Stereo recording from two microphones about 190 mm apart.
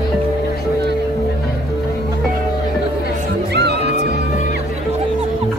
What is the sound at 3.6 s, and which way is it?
Music, 60° right (ahead or behind).